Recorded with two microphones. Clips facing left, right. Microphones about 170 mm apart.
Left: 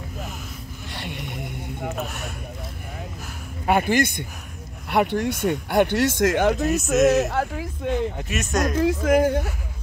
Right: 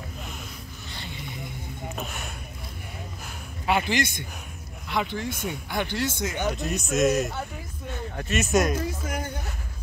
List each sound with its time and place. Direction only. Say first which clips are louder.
0.8 s a sound: left 6 dB; 75° left (ahead or behind)
2.0 s speech: left 4 dB; centre (ahead or behind)
3.6 s speech: left 5 dB; 50° left (ahead or behind)
4.8 s speech: left 7 dB; 65° left (ahead or behind); by 8.0 s 90° left
8.4 s speech: right 2 dB; 5° right (ahead or behind)
8.7 s speech: left 12 dB; 90° left